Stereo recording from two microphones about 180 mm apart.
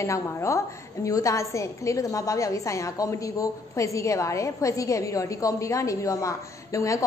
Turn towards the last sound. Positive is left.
turn(degrees=15)  # may be behind; listen again after turning